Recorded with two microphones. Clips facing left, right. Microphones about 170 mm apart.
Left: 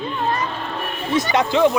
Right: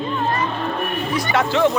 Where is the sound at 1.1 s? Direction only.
20° left (ahead or behind).